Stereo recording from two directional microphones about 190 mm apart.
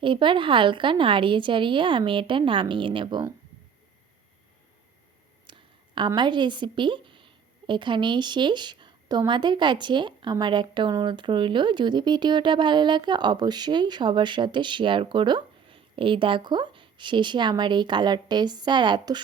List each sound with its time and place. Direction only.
0.0 s a woman's voice: 25° right (ahead or behind)
5.5 s a sound: 25° right (ahead or behind)
6.1 s a woman's voice: 25° right (ahead or behind)